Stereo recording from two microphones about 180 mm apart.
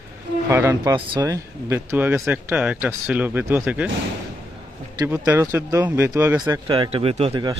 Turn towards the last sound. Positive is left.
turn(degrees=-25)  # may be behind; listen again after turning